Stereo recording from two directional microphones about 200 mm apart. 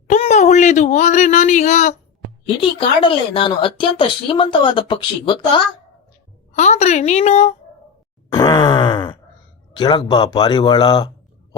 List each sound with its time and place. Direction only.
0.1 s speech: 35° left (ahead or behind)
2.6 s a woman's voice: 25° left (ahead or behind)
6.5 s a woman's voice: 35° left (ahead or behind)
8.3 s groan: 20° left (ahead or behind)
9.7 s a woman's voice: 25° left (ahead or behind)